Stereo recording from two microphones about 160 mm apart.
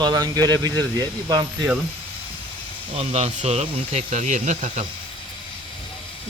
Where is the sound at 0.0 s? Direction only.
25° right (ahead or behind).